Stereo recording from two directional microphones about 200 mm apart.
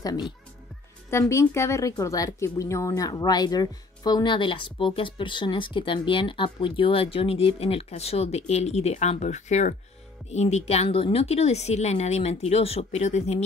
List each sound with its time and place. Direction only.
1.3 s a woman's voice: 15° left (ahead or behind); by 13.4 s 35° left (ahead or behind)